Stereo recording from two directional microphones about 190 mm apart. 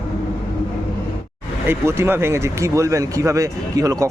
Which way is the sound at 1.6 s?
10° right (ahead or behind).